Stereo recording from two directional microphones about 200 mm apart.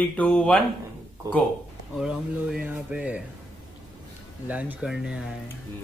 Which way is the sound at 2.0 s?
5° right (ahead or behind).